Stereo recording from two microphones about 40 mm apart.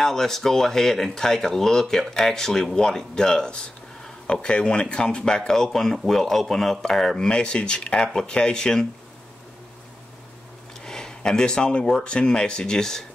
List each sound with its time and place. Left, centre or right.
0.0 s speech: centre
10.8 s a sound: centre
12.0 s speech: left